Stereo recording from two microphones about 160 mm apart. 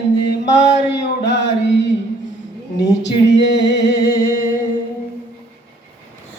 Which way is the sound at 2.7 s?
90° left.